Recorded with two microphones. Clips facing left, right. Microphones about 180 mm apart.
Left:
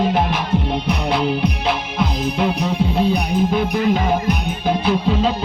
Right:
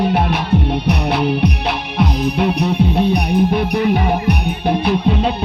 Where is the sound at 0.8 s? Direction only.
70° right (ahead or behind).